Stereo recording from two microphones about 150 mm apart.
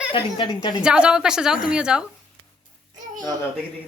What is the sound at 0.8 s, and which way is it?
A woman's voice, 5° right (ahead or behind).